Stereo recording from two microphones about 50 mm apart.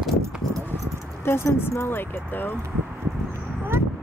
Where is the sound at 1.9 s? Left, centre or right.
Left.